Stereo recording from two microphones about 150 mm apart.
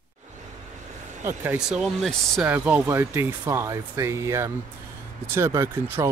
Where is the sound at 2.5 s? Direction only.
10° right (ahead or behind).